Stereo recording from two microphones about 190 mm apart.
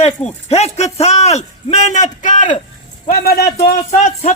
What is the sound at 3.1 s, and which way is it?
Speech, 50° left (ahead or behind).